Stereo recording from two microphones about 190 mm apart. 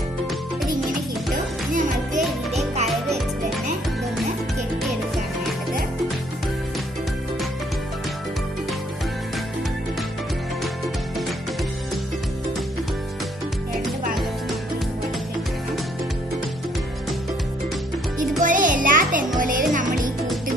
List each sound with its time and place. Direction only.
1.7 s music: 45° right (ahead or behind)
2.9 s music: centre (ahead or behind)
18.4 s music: 45° right (ahead or behind)